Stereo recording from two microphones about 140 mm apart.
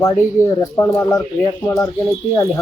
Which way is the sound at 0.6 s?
25° left (ahead or behind).